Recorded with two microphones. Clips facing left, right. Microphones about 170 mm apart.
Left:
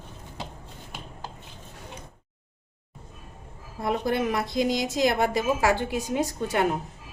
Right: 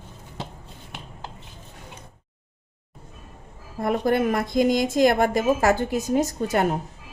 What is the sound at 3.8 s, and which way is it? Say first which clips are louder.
A woman's voice: right 4 dB; 50° right (ahead or behind).